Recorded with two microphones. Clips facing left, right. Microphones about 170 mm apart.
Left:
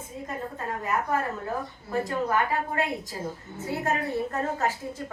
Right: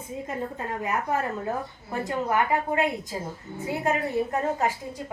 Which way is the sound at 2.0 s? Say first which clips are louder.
Right 3 dB; 15° right (ahead or behind).